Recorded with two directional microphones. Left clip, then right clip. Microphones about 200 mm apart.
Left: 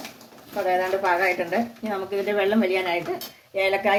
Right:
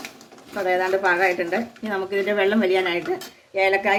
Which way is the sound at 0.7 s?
25° right (ahead or behind).